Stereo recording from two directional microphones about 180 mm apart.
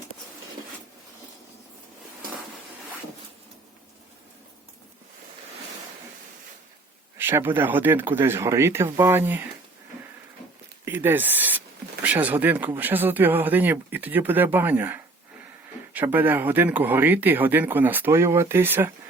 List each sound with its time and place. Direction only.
7.2 s speech: 10° right (ahead or behind)
10.8 s speech: 10° right (ahead or behind)